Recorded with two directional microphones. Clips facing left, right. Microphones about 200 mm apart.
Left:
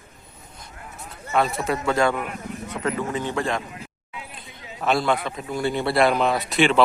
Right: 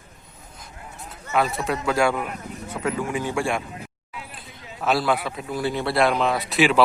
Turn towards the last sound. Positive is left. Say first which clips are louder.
# even
turn(degrees=-5)  # may be behind; listen again after turning